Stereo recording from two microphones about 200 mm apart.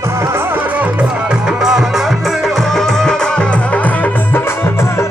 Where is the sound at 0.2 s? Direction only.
10° right (ahead or behind).